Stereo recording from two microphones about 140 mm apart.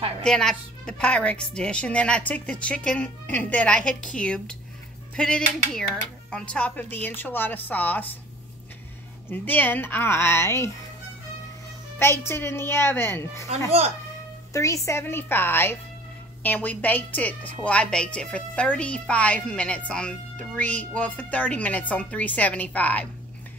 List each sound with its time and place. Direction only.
0.2 s a woman's voice: 5° left (ahead or behind)
9.3 s a woman's voice: 15° left (ahead or behind)
12.0 s a woman's voice: 15° left (ahead or behind)
13.7 s speech: 50° right (ahead or behind)
14.5 s a woman's voice: 20° left (ahead or behind)